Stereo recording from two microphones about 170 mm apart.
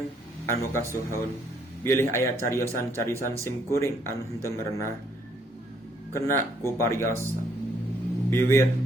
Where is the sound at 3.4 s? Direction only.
15° left (ahead or behind).